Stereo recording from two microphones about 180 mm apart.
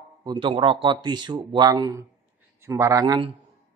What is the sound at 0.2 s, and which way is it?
Speech, 25° right (ahead or behind).